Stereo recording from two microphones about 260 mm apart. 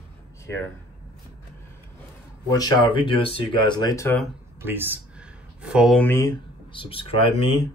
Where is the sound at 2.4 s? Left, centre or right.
Centre.